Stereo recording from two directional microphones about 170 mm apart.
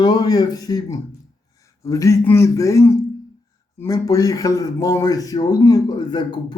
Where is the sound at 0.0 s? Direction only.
25° left (ahead or behind).